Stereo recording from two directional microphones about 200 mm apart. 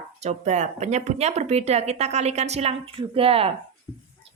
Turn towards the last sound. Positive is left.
turn(degrees=-30)  # may be behind; listen again after turning